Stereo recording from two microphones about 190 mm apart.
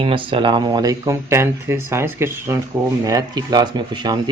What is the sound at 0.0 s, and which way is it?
A man's voice, 25° right (ahead or behind).